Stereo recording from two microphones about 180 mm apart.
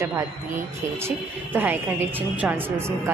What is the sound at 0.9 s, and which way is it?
A woman's voice, 10° right (ahead or behind).